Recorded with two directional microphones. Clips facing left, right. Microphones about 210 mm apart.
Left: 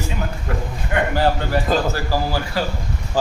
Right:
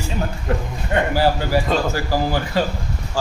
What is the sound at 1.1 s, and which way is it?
Speech, 10° right (ahead or behind).